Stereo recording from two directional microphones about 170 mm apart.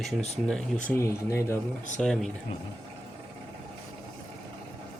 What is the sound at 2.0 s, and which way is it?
Speech, centre (ahead or behind).